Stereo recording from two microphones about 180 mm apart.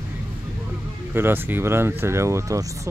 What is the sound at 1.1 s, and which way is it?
Speech, 10° right (ahead or behind).